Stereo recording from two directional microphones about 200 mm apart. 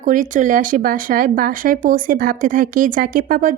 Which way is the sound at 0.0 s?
40° right (ahead or behind).